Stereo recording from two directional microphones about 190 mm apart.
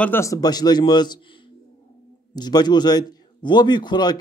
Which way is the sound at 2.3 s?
20° left (ahead or behind).